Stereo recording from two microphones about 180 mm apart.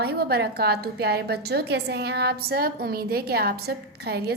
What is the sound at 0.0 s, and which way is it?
A woman's voice, 60° right (ahead or behind).